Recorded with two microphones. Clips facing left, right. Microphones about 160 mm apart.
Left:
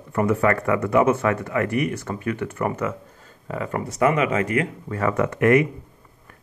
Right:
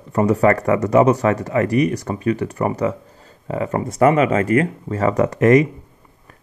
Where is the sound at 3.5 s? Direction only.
35° right (ahead or behind).